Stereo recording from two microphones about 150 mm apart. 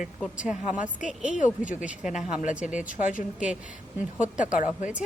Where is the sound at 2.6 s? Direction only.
60° left (ahead or behind).